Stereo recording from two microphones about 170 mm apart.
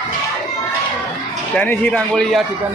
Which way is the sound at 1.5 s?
10° left (ahead or behind).